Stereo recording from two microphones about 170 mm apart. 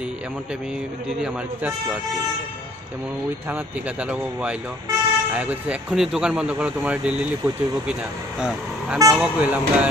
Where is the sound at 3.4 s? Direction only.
10° right (ahead or behind).